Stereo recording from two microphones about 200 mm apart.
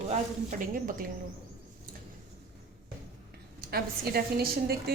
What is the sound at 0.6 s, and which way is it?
Speech, 45° right (ahead or behind).